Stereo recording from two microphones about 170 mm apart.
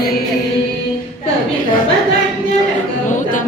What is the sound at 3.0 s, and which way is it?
Music, 50° left (ahead or behind).